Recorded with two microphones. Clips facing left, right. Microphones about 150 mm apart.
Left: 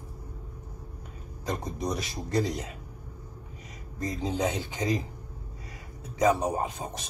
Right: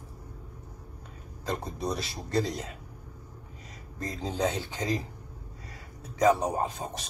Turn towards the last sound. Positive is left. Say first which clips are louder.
# even
turn(degrees=20)  # may be behind; listen again after turning